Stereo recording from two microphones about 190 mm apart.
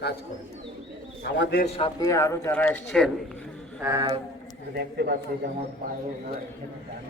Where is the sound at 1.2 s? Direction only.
65° left (ahead or behind).